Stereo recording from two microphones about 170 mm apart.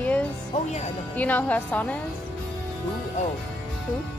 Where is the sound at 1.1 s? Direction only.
10° left (ahead or behind).